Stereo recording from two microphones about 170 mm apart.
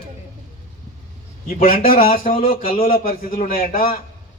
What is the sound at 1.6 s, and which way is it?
A man's voice, 55° left (ahead or behind).